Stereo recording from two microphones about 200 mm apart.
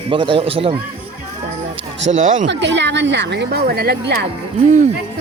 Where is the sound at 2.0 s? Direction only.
75° right (ahead or behind).